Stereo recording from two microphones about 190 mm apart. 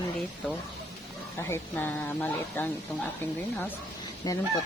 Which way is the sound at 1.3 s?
15° left (ahead or behind).